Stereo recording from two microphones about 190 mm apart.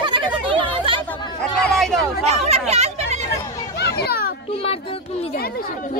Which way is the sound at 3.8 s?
60° left (ahead or behind).